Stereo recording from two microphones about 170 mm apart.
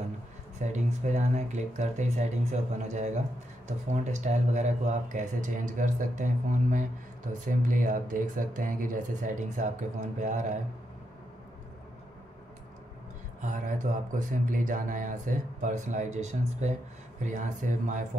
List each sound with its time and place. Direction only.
0.6 s speech: 45° right (ahead or behind)
3.6 s speech: 40° right (ahead or behind)
13.4 s speech: 45° right (ahead or behind)